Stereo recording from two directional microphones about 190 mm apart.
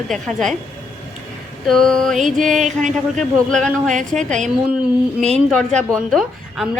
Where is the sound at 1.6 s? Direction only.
Centre (ahead or behind).